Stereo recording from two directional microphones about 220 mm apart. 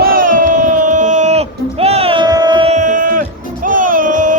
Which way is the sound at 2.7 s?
35° right (ahead or behind).